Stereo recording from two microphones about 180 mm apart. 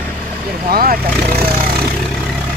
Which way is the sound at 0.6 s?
55° right (ahead or behind).